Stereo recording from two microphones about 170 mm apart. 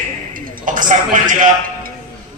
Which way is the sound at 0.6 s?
50° right (ahead or behind).